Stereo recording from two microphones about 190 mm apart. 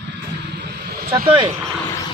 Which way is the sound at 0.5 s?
60° right (ahead or behind).